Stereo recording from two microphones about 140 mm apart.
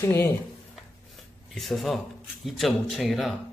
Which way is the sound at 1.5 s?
Centre (ahead or behind).